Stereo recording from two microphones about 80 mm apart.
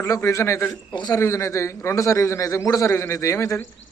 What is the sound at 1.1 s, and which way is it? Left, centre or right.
A man's voice, left.